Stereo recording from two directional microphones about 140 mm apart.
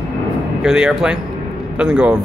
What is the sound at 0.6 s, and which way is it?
A man's voice, 5° right (ahead or behind).